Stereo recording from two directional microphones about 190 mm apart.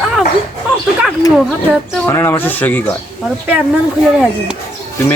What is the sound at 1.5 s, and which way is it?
A man's voice, 10° left (ahead or behind).